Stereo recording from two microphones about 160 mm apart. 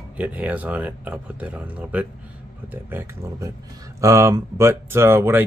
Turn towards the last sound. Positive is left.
turn(degrees=-15)  # may be behind; listen again after turning